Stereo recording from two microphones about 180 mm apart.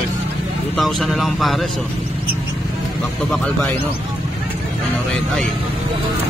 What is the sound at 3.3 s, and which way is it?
Speech, 5° left (ahead or behind).